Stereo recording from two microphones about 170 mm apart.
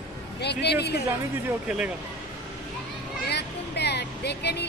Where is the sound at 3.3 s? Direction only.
80° left.